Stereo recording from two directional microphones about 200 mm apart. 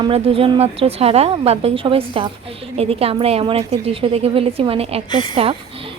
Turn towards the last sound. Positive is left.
turn(degrees=-30)  # may be behind; listen again after turning